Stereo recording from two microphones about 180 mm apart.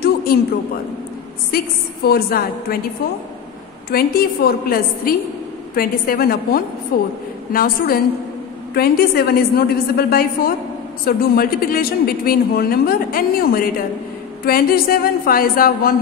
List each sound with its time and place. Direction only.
0.0 s a sound: 55° left (ahead or behind)
2.0 s speech: 60° left (ahead or behind)
3.9 s speech: 60° left (ahead or behind)